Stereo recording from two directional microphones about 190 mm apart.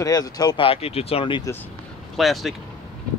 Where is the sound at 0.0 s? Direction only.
20° left (ahead or behind).